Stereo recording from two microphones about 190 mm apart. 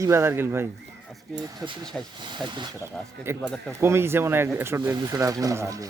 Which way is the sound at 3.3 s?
15° right (ahead or behind).